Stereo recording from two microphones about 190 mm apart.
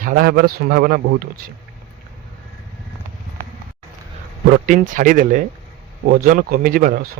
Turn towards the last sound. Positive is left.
turn(degrees=-50)  # may be behind; listen again after turning